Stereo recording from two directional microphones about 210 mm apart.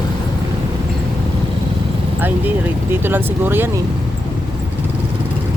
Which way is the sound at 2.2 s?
10° right (ahead or behind).